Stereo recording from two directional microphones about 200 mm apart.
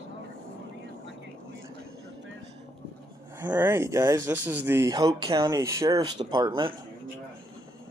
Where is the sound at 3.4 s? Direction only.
10° right (ahead or behind).